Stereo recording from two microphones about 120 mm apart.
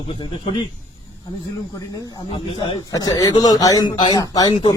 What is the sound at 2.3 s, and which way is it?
Speech, 45° left (ahead or behind).